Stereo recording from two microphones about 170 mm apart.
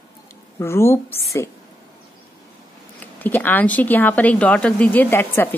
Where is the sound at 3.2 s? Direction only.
10° left (ahead or behind).